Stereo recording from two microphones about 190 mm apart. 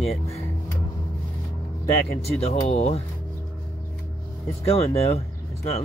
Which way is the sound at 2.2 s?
30° left (ahead or behind).